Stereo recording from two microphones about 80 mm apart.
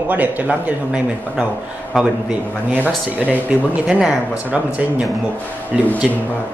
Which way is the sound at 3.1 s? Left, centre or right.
Right.